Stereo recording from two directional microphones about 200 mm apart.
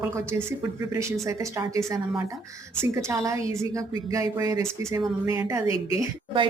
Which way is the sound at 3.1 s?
15° right (ahead or behind).